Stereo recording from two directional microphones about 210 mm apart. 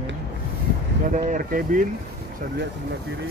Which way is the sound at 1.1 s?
40° right (ahead or behind).